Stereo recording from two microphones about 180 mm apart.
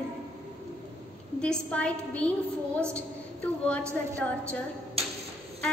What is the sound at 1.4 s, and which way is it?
A woman's voice, 5° left (ahead or behind).